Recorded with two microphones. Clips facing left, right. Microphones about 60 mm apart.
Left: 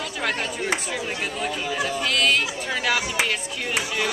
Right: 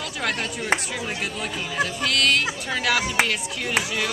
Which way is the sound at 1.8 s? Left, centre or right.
Centre.